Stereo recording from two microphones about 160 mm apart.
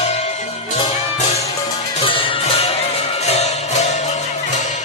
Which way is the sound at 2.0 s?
30° left (ahead or behind).